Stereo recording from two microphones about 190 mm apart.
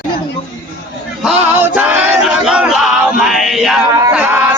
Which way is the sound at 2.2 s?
5° right (ahead or behind).